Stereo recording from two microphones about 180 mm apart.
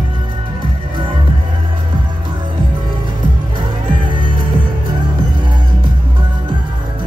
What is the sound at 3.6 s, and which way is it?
Music, 25° right (ahead or behind).